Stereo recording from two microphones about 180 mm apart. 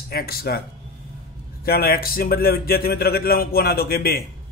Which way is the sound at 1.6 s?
55° left (ahead or behind).